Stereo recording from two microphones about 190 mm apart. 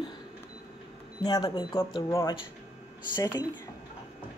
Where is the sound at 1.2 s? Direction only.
20° left (ahead or behind).